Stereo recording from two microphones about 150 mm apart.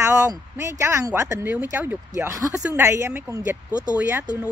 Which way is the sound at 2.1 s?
20° right (ahead or behind).